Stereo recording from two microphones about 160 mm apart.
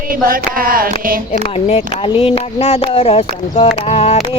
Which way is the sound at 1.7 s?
40° left (ahead or behind).